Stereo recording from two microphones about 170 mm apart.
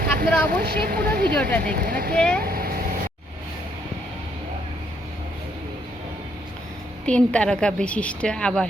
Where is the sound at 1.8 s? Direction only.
60° right (ahead or behind).